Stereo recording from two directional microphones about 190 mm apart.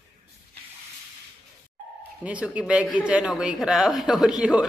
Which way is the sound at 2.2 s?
5° right (ahead or behind).